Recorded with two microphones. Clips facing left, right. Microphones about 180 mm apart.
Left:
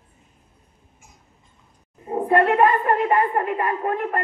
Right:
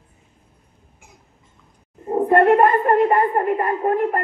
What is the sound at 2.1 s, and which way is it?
A woman's voice, 45° right (ahead or behind).